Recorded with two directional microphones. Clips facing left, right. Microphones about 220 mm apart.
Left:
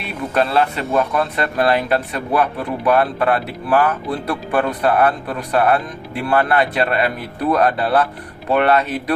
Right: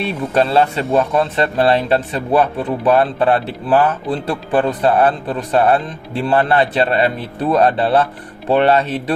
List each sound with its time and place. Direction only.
0.0 s speech: 30° right (ahead or behind)